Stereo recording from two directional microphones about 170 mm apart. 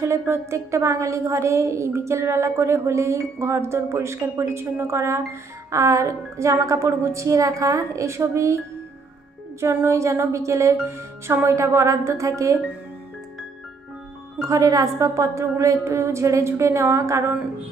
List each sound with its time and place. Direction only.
0.0 s a woman's voice: 15° right (ahead or behind)
9.6 s a woman's voice: 15° right (ahead or behind)
14.4 s a woman's voice: 20° right (ahead or behind)